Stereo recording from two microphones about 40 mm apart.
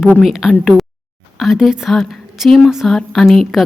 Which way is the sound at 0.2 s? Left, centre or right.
Centre.